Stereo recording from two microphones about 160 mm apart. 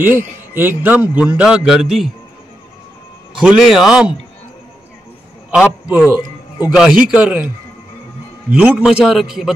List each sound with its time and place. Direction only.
0.0 s a man's voice: 15° right (ahead or behind)
3.3 s a man's voice: centre (ahead or behind)
5.5 s a man's voice: 5° right (ahead or behind)
8.5 s a man's voice: 10° right (ahead or behind)